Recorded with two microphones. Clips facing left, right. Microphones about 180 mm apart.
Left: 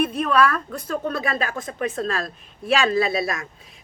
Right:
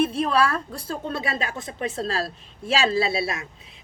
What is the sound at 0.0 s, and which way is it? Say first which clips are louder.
A woman's voice: left 1 dB; 30° right (ahead or behind).